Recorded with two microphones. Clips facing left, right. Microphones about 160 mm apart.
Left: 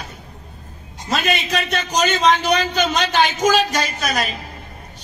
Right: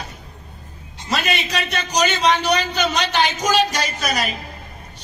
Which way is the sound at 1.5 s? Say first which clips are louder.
Left 2 dB; 50° left (ahead or behind).